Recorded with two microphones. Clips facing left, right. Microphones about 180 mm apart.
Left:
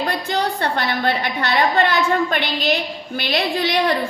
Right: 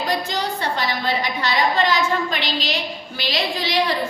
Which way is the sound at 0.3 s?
60° left (ahead or behind).